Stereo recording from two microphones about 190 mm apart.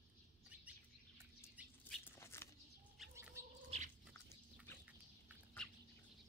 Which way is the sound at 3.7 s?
30° right (ahead or behind).